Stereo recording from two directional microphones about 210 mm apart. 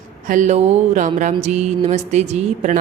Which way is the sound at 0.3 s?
35° right (ahead or behind).